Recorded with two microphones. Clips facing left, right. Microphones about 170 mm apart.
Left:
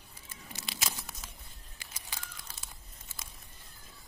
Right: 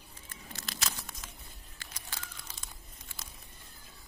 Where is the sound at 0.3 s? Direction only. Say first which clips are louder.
Even; 15° left (ahead or behind).